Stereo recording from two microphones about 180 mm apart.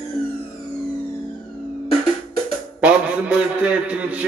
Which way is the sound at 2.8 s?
5° right (ahead or behind).